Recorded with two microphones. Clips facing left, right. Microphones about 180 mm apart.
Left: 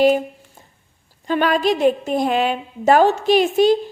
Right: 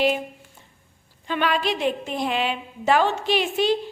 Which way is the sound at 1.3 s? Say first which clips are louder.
Left 6 dB; 40° left (ahead or behind).